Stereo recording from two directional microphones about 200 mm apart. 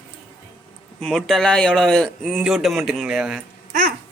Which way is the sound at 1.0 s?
Centre (ahead or behind).